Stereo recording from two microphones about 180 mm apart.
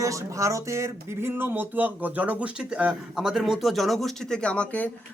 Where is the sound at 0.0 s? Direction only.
20° right (ahead or behind).